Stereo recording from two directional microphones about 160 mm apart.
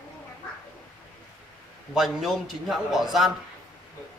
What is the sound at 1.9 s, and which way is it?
A man's voice, centre (ahead or behind).